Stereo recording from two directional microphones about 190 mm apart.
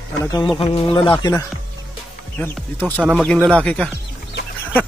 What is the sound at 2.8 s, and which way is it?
Speech, 5° right (ahead or behind).